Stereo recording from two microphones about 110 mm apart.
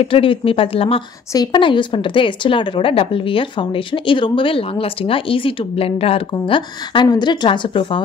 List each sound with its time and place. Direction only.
0.0 s speech: 55° left (ahead or behind)
1.3 s a woman's voice: 40° left (ahead or behind)